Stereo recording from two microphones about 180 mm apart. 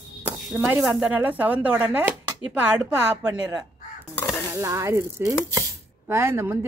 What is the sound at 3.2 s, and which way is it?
Speech, 10° right (ahead or behind).